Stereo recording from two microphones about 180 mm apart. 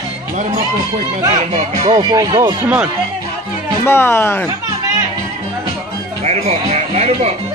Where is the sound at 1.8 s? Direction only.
25° right (ahead or behind).